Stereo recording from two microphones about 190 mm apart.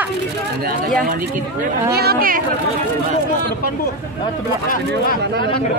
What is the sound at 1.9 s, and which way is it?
Speech, 55° right (ahead or behind).